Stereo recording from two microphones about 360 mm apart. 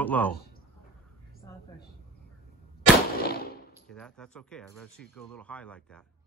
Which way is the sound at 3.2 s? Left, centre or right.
Left.